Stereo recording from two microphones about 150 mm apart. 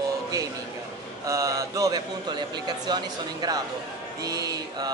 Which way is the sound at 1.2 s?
20° right (ahead or behind).